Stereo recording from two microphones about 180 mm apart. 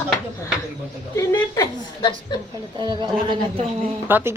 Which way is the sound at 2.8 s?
25° right (ahead or behind).